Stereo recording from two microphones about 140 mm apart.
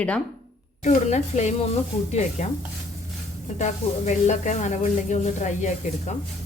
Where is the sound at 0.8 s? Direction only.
55° left (ahead or behind).